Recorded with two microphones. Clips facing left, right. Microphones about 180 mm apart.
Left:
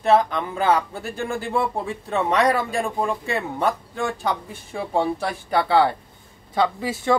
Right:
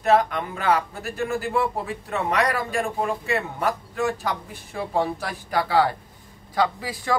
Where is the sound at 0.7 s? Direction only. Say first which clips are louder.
Left 1 dB; 30° left (ahead or behind).